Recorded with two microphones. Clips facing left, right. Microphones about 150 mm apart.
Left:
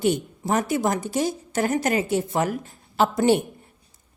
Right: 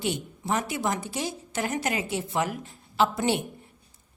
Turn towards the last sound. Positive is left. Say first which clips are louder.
# left 5 dB
turn(degrees=45)  # may be behind; listen again after turning